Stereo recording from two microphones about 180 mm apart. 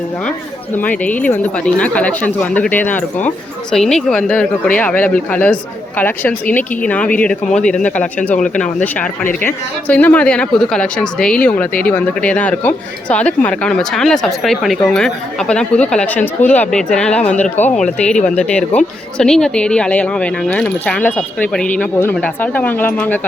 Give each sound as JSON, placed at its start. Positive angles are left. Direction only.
{"t": 0.8, "sound": "speech", "side_deg": 10}